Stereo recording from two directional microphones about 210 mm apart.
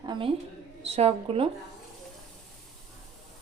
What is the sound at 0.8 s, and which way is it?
Speech, 30° right (ahead or behind).